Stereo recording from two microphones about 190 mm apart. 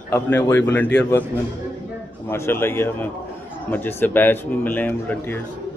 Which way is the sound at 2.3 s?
15° left (ahead or behind).